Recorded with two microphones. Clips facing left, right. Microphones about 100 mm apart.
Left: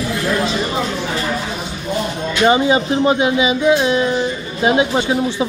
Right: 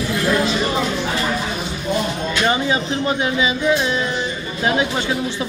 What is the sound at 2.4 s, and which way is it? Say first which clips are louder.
Speech: left 7 dB; 20° left (ahead or behind).